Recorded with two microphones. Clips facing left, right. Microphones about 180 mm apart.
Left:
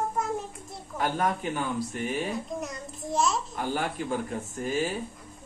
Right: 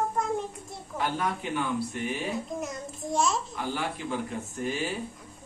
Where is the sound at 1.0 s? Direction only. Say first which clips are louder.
Left 2 dB; 45° left (ahead or behind).